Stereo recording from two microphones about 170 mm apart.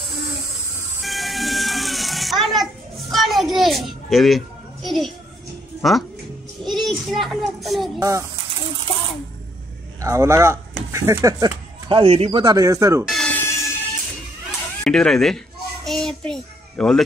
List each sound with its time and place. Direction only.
1.0 s music: centre (ahead or behind)
4.8 s a sound: centre (ahead or behind)
5.8 s a child's voice: centre (ahead or behind)
8.0 s speech: 20° right (ahead or behind)
10.0 s speech: 15° right (ahead or behind)
11.9 s speech: 35° right (ahead or behind); by 13.0 s 20° right (ahead or behind)
13.1 s a sound: 5° left (ahead or behind)
14.8 s a child's voice: 5° left (ahead or behind)